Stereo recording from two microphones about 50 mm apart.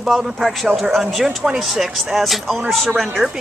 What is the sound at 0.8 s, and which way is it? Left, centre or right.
Speech, centre.